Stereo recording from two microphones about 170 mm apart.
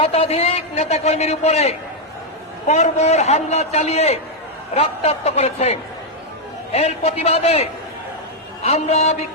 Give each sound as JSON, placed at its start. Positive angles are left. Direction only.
{"t": 0.0, "sound": "a man's voice", "side_deg": 35}